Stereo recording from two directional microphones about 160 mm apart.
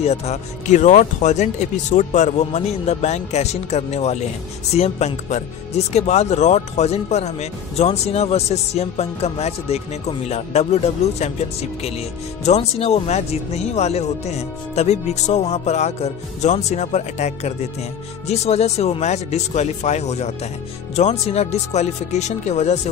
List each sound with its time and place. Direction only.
0.0 s speech: 40° left (ahead or behind)
12.4 s speech: 40° left (ahead or behind)